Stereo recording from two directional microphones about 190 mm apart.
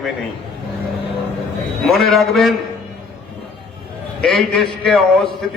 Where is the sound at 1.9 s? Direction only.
Centre (ahead or behind).